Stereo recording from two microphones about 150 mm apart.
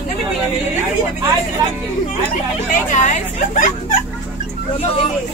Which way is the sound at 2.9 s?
55° left (ahead or behind).